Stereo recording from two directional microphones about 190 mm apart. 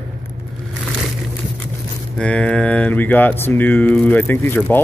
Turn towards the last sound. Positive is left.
turn(degrees=10)  # may be behind; listen again after turning